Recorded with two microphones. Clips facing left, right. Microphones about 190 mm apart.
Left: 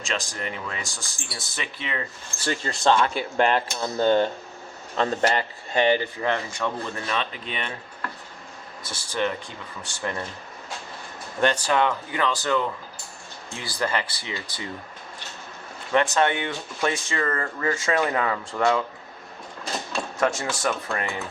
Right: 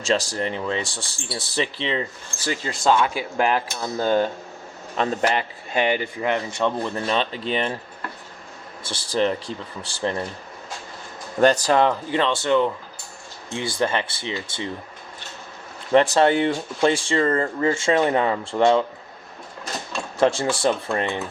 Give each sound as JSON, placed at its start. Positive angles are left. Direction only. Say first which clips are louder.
{"t": 0.0, "sound": "speech", "louder": "right 8 dB", "side_deg": -35}
{"t": 2.4, "sound": "speech", "louder": "even", "side_deg": -10}
{"t": 8.8, "sound": "speech", "louder": "right 5 dB", "side_deg": -30}
{"t": 11.3, "sound": "speech", "louder": "right 5 dB", "side_deg": -40}
{"t": 15.9, "sound": "speech", "louder": "right 5 dB", "side_deg": -35}
{"t": 20.1, "sound": "speech", "louder": "right 6 dB", "side_deg": -30}